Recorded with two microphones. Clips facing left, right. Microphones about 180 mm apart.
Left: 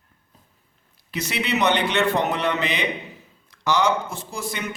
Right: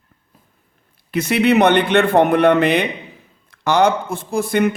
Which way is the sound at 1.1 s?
55° right (ahead or behind).